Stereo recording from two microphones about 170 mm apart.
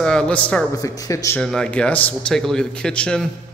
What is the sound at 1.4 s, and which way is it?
A man's voice, 5° left (ahead or behind).